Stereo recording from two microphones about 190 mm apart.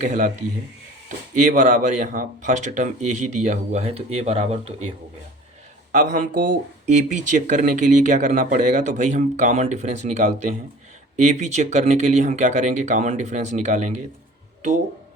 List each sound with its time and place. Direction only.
0.0 s speech: 40° right (ahead or behind)
1.4 s speech: 40° right (ahead or behind)
5.9 s speech: 40° right (ahead or behind)